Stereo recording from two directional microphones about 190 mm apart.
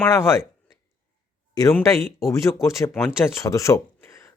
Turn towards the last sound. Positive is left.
turn(degrees=15)  # may be behind; listen again after turning